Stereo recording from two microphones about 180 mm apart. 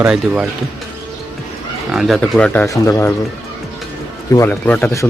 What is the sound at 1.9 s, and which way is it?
Speech, centre (ahead or behind).